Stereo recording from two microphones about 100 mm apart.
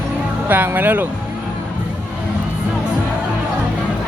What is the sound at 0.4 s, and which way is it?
Speech, 20° right (ahead or behind).